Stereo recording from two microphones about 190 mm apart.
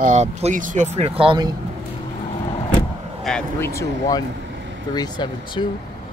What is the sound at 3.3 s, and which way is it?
Speech, 10° left (ahead or behind).